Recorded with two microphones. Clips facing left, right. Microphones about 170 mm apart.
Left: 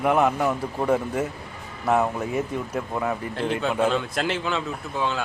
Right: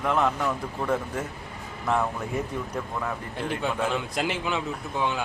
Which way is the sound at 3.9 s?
15° right (ahead or behind).